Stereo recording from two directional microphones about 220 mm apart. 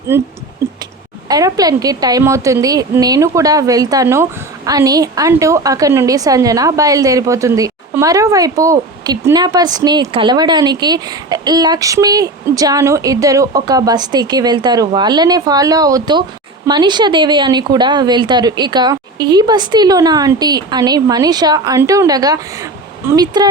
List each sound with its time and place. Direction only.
0.1 s a woman's voice: 10° right (ahead or behind)
1.3 s a woman's voice: 15° right (ahead or behind)